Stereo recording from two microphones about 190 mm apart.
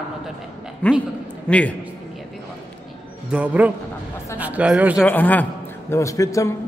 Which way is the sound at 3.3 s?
10° right (ahead or behind).